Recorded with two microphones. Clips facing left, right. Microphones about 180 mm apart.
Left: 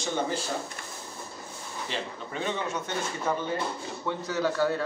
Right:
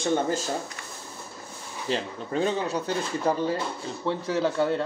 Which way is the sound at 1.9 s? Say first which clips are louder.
Right 8 dB; 40° right (ahead or behind).